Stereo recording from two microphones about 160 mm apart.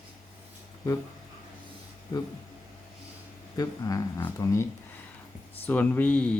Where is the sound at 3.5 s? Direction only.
20° left (ahead or behind).